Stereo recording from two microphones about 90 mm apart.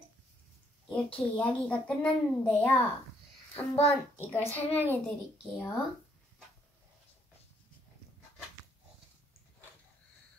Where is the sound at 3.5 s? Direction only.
25° left (ahead or behind).